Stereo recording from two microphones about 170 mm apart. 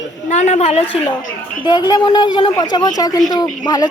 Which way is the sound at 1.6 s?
25° left (ahead or behind).